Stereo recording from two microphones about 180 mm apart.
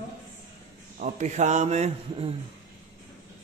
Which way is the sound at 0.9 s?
45° right (ahead or behind).